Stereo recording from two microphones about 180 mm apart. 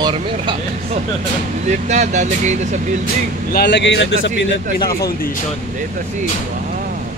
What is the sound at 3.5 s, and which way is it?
Speech, 75° left (ahead or behind).